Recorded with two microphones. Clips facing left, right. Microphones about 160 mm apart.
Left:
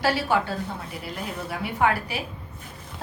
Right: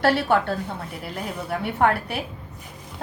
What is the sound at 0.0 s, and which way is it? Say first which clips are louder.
A woman's voice: right 3 dB; 60° right (ahead or behind).